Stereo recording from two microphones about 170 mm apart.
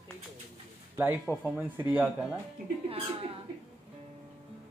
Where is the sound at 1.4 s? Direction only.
10° right (ahead or behind).